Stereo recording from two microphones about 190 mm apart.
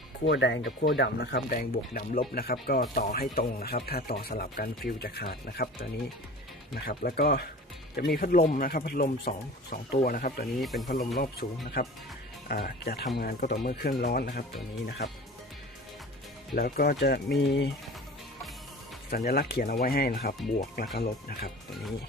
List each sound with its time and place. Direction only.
0.3 s speech: 75° left (ahead or behind)
0.8 s speech: 60° left (ahead or behind)
6.8 s speech: 55° left (ahead or behind)
10.6 s speech: centre (ahead or behind)
11.2 s speech: 55° left (ahead or behind)
16.6 s speech: 50° left (ahead or behind)
19.1 s speech: 55° left (ahead or behind)